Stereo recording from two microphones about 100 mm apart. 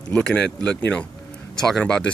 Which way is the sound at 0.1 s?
10° left (ahead or behind).